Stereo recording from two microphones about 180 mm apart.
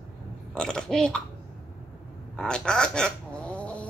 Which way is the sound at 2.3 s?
5° left (ahead or behind).